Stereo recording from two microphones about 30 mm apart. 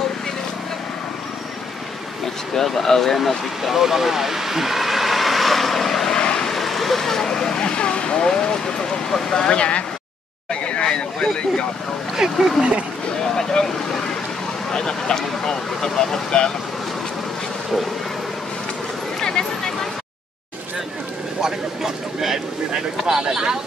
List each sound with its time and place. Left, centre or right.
2.2 s speech: centre
3.7 s speech: centre
6.0 s vehicle: left
6.4 s speech: centre; by 7.6 s left
7.6 s speech: left
9.5 s speech: left
10.5 s a sound: left
11.1 s speech: left
12.4 s speech: centre
13.4 s speech: left
19.1 s a sound: left
21.4 s a sound: centre